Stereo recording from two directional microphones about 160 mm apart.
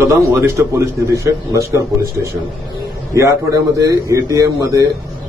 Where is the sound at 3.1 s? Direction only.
20° right (ahead or behind).